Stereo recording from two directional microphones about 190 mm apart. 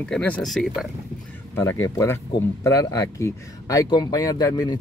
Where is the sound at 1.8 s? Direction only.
15° left (ahead or behind).